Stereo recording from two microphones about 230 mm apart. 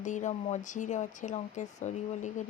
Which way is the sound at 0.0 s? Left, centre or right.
Left.